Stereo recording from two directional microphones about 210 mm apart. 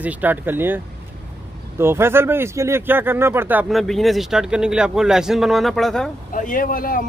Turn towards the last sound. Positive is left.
turn(degrees=40)  # may be behind; listen again after turning